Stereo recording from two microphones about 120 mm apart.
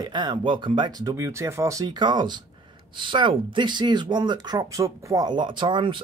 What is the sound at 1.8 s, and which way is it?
Speech, 40° right (ahead or behind).